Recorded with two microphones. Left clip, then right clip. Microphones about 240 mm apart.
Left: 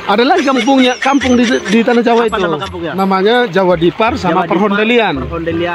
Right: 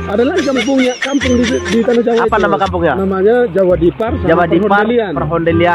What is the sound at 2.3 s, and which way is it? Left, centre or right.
Speech, right.